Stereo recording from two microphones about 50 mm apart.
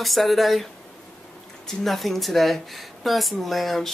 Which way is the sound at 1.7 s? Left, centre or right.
Centre.